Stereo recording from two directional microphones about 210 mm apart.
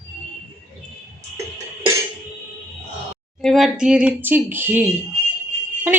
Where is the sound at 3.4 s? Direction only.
Centre (ahead or behind).